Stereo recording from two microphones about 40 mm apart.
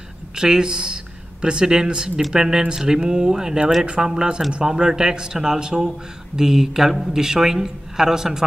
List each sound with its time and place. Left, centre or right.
0.4 s a man's voice: centre
3.8 s a man's voice: right